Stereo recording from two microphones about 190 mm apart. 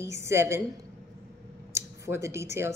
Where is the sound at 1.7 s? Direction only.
15° right (ahead or behind).